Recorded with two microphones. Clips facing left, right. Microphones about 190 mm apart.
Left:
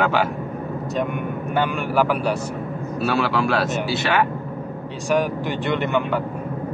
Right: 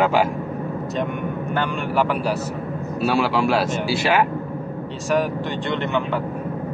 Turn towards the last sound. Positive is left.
turn(degrees=5)  # may be behind; listen again after turning